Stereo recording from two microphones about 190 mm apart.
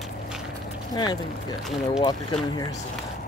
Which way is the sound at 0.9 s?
20° left (ahead or behind).